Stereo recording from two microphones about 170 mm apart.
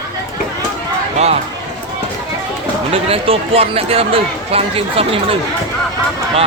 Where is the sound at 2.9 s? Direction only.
35° right (ahead or behind).